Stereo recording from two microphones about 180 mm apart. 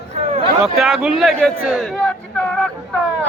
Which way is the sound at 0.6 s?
Centre (ahead or behind).